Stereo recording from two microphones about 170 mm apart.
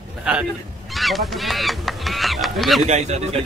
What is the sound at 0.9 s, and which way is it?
Speech, centre (ahead or behind).